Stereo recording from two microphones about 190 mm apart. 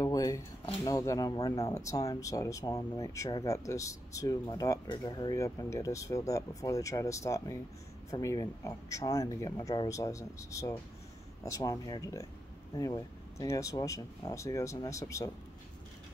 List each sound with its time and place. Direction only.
0.0 s speech: 15° left (ahead or behind)